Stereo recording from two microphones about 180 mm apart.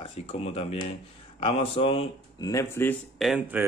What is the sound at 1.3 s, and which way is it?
Speech, 30° left (ahead or behind).